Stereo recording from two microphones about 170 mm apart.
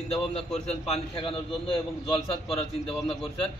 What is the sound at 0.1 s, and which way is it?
A man's voice, 35° left (ahead or behind).